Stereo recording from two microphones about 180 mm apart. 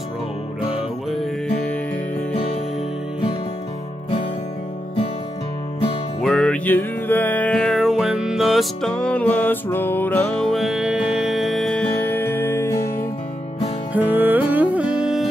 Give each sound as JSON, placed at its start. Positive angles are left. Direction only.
{"t": 1.1, "sound": "music", "side_deg": 5}
{"t": 6.2, "sound": "music", "side_deg": 5}
{"t": 13.9, "sound": "music", "side_deg": -10}